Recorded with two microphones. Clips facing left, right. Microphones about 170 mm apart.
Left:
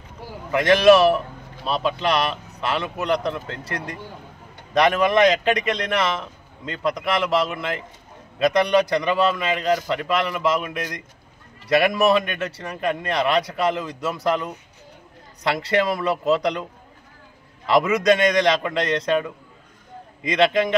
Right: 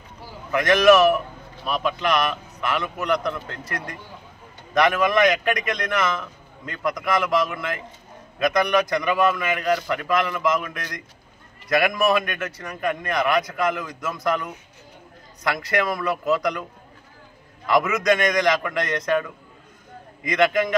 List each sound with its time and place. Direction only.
0.5 s speech: 30° left (ahead or behind)
11.7 s speech: 25° left (ahead or behind)
17.6 s speech: 30° left (ahead or behind)